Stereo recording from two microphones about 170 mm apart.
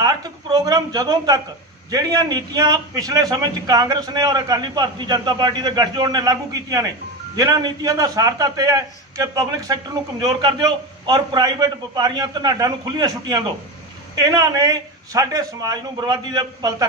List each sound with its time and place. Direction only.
0.0 s a man's voice: 20° right (ahead or behind)